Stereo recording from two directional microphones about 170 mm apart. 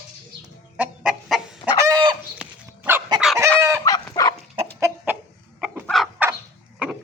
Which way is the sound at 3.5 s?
15° right (ahead or behind).